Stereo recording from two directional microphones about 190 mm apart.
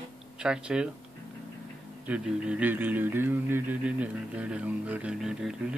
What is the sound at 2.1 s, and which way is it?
Speech, 5° right (ahead or behind).